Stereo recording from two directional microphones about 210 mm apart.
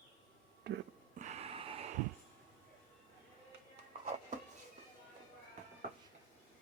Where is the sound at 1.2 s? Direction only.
30° right (ahead or behind).